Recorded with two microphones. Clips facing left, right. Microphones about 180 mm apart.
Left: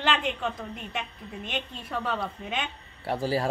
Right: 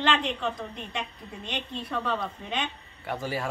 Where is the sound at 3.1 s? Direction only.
35° left (ahead or behind).